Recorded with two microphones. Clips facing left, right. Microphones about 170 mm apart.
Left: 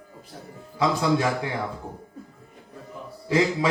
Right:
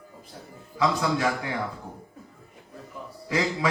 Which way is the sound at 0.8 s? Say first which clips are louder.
Left 2 dB; 30° left (ahead or behind).